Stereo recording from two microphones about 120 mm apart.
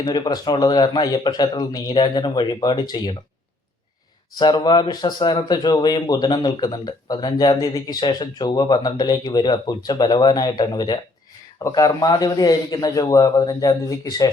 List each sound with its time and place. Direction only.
0.0 s speech: 35° left (ahead or behind)
4.4 s speech: 35° left (ahead or behind)